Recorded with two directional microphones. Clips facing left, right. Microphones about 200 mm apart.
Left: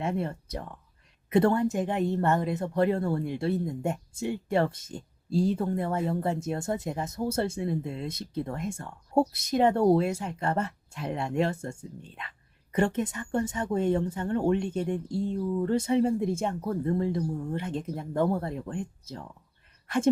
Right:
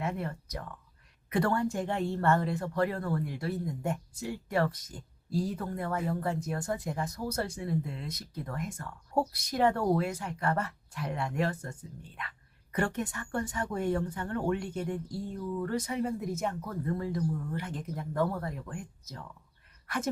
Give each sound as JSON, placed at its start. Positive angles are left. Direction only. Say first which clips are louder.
{"t": 0.0, "sound": "speech", "louder": "left 4 dB", "side_deg": 25}